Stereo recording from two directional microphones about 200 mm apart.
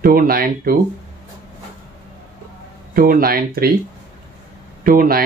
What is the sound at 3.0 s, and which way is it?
Speech, 45° right (ahead or behind).